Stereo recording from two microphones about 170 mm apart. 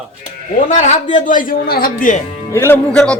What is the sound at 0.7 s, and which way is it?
A man's voice, 45° left (ahead or behind).